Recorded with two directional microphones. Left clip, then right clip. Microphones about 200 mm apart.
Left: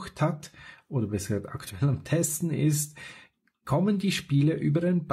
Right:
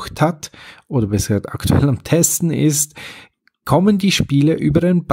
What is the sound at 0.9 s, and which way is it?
Speech, 40° right (ahead or behind).